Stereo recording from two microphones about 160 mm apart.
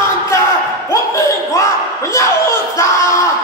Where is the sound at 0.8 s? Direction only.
20° left (ahead or behind).